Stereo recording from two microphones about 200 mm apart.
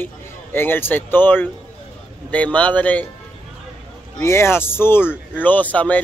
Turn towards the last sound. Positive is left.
turn(degrees=10)  # may be behind; listen again after turning